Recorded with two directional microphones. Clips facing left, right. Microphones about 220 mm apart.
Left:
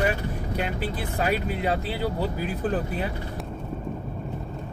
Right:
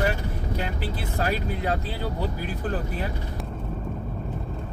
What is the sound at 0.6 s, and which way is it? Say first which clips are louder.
Speech: left 4 dB; 15° left (ahead or behind).